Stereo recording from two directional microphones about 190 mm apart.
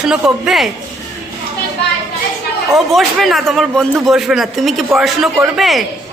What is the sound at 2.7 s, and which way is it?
A man's voice, centre (ahead or behind).